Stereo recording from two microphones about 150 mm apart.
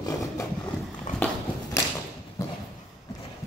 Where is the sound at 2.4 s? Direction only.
20° left (ahead or behind).